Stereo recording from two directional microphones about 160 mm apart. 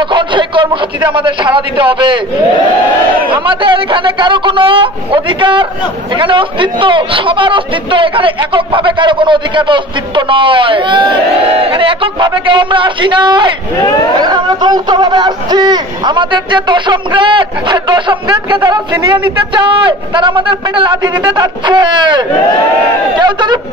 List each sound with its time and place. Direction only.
0.1 s a sound: 30° right (ahead or behind)
1.1 s a man's voice: 30° right (ahead or behind)
3.3 s a man's voice: 30° right (ahead or behind)